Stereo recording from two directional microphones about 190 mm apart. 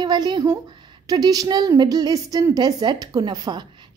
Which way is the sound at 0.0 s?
25° right (ahead or behind).